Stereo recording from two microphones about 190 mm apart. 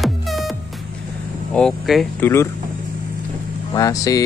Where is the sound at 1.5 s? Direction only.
Centre (ahead or behind).